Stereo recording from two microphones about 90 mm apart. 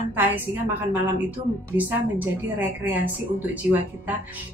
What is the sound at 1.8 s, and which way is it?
Speech, 20° right (ahead or behind).